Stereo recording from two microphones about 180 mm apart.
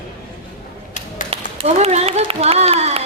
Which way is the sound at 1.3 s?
35° right (ahead or behind).